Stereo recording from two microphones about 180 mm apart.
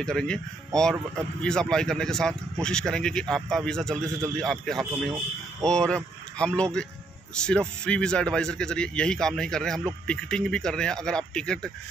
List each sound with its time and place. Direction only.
0.0 s a man's voice: 5° left (ahead or behind)